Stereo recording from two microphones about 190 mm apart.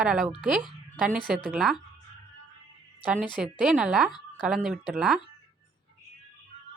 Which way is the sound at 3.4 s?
5° right (ahead or behind).